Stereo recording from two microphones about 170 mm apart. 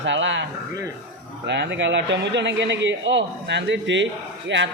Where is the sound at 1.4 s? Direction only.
90° right.